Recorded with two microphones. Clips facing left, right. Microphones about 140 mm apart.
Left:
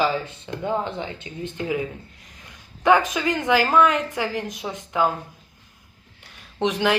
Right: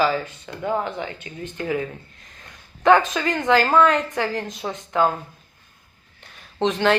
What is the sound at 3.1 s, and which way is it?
Speech, 15° left (ahead or behind).